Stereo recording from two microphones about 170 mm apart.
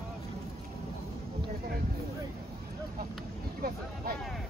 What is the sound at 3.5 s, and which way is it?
Vehicle, 60° right (ahead or behind).